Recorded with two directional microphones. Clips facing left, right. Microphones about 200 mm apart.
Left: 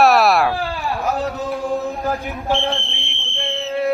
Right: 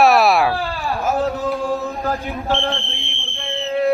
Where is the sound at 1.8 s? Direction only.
15° left (ahead or behind).